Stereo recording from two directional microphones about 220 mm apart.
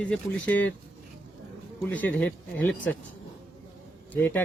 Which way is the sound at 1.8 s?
5° left (ahead or behind).